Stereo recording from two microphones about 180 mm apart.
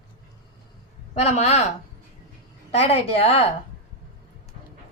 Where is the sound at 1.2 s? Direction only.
35° left (ahead or behind).